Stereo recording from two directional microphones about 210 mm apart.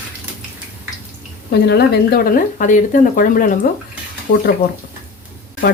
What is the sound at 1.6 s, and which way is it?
Speech, 50° left (ahead or behind).